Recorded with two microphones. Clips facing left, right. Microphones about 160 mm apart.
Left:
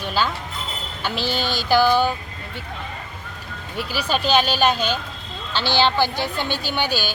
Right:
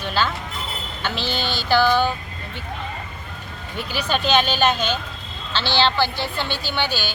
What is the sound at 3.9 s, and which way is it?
Speech, 5° left (ahead or behind).